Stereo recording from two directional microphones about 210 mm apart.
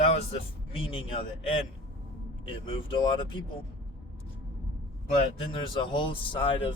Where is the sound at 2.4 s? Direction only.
25° left (ahead or behind).